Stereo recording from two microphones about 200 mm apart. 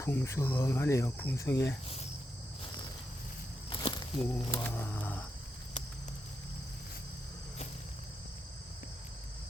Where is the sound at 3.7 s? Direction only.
25° left (ahead or behind).